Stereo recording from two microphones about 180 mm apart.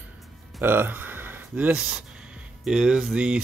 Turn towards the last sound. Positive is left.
turn(degrees=-5)  # may be behind; listen again after turning